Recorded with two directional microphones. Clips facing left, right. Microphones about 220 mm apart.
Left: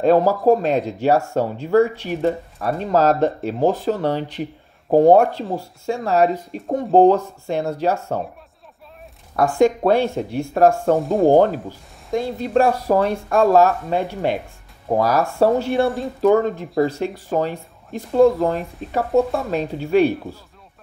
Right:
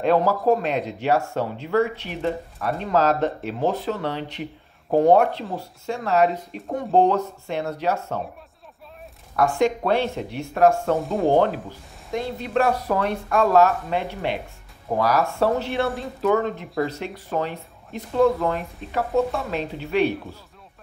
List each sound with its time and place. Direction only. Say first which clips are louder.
0.0 s speech: left 4 dB; 40° left (ahead or behind)
9.3 s speech: left 4 dB; 40° left (ahead or behind)
11.0 s stir: left 6 dB; centre (ahead or behind)
11.2 s speech: left 5 dB; 45° left (ahead or behind)
18.2 s speech: left 4 dB; 30° left (ahead or behind)
18.8 s stir: left 5 dB; centre (ahead or behind)
19.1 s speech: left 5 dB; 45° left (ahead or behind)